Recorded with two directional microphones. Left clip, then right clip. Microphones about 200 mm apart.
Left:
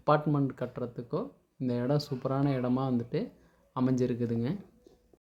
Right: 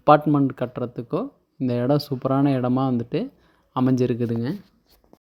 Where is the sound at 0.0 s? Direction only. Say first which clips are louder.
Right 11 dB; 40° right (ahead or behind).